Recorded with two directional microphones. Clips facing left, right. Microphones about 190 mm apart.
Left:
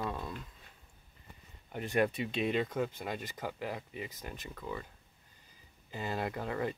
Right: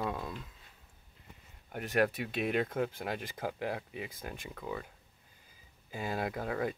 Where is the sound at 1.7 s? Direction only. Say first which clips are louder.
Even; 5° right (ahead or behind).